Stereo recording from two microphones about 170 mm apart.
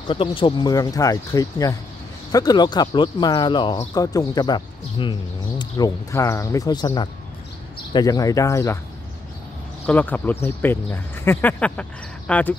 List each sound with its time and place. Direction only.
0.0 s speech: 30° left (ahead or behind)
9.8 s speech: 10° left (ahead or behind)